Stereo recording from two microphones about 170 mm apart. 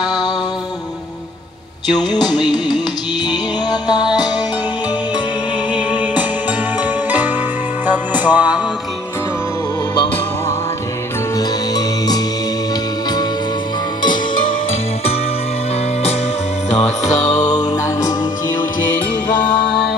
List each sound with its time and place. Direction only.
0.0 s music: 25° left (ahead or behind)
1.9 s music: 25° left (ahead or behind)
5.7 s music: 10° right (ahead or behind)
11.3 s music: 20° left (ahead or behind)
14.0 s music: 25° left (ahead or behind)
16.7 s music: 40° left (ahead or behind)
17.4 s music: 20° left (ahead or behind)